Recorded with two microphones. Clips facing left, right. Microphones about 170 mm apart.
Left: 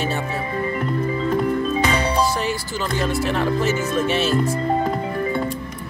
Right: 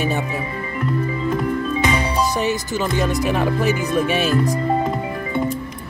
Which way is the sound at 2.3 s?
20° right (ahead or behind).